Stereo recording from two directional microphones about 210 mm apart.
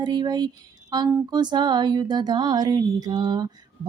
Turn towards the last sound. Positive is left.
turn(degrees=-20)  # may be behind; listen again after turning